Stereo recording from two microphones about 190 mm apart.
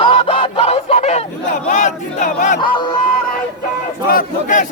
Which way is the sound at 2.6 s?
25° left (ahead or behind).